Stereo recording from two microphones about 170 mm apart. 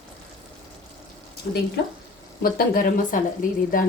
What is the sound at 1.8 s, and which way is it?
Speech, 90° left.